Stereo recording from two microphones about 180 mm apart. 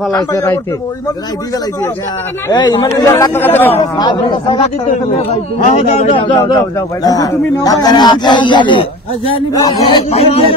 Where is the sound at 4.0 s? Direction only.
25° left (ahead or behind).